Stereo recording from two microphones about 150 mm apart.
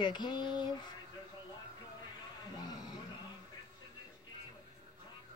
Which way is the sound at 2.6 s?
30° left (ahead or behind).